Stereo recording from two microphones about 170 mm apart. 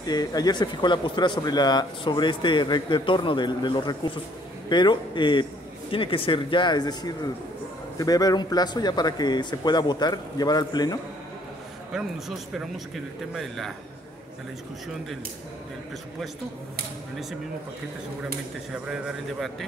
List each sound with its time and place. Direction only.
0.0 s speech: 25° left (ahead or behind)
11.9 s speech: centre (ahead or behind)
18.2 s speech: 5° right (ahead or behind)